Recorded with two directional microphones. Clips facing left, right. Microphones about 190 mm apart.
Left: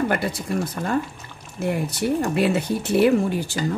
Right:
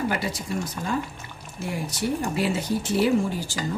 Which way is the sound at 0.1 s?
55° left (ahead or behind).